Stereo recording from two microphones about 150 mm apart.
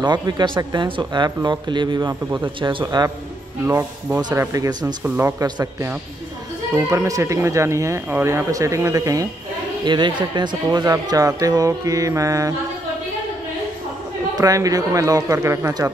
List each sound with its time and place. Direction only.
0.0 s speech: 30° right (ahead or behind)
3.6 s speech: 15° right (ahead or behind)
5.0 s speech: 10° right (ahead or behind)
5.4 s speech: 20° right (ahead or behind)
14.3 s speech: 25° right (ahead or behind)